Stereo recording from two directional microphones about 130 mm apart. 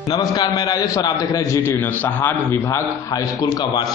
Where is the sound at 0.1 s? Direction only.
30° left (ahead or behind).